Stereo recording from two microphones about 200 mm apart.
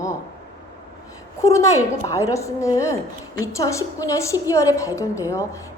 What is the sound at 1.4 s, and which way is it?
A woman's voice, 15° left (ahead or behind).